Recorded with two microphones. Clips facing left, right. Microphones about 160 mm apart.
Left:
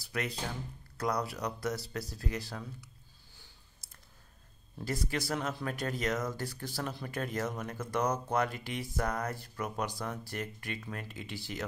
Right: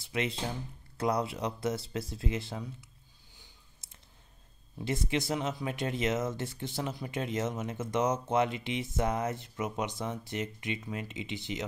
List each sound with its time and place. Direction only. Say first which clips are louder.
0.0 s speech: right 3 dB; 25° right (ahead or behind)
4.8 s speech: right 3 dB; 20° right (ahead or behind)